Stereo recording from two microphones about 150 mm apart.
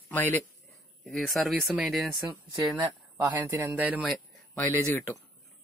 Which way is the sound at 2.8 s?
20° right (ahead or behind).